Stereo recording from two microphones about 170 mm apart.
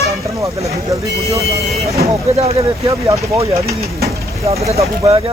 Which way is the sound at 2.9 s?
20° right (ahead or behind).